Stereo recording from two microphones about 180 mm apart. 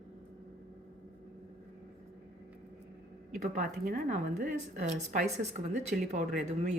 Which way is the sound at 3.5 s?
50° right (ahead or behind).